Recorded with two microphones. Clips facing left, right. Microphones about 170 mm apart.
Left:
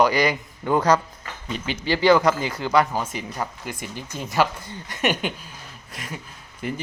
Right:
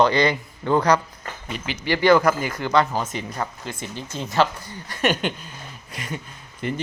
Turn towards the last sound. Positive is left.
turn(degrees=0)  # may be behind; listen again after turning